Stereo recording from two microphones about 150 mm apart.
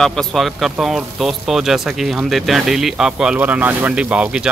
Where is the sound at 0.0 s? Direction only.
Centre (ahead or behind).